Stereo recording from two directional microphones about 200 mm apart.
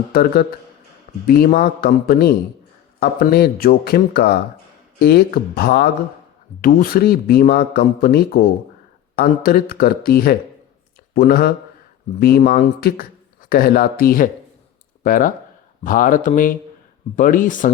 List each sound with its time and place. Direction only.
0.1 s speech: 50° left (ahead or behind)